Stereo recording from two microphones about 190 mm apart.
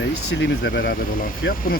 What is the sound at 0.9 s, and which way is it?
Speech, 50° left (ahead or behind).